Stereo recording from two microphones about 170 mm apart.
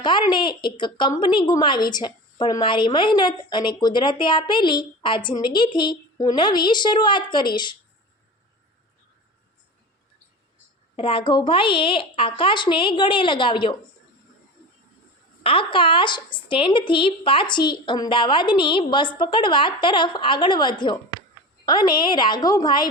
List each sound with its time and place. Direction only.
0.0 s a woman's voice: 25° left (ahead or behind)
10.9 s a woman's voice: 30° left (ahead or behind)
15.4 s a woman's voice: 30° left (ahead or behind)